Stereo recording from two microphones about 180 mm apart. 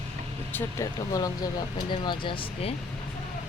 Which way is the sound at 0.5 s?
15° left (ahead or behind).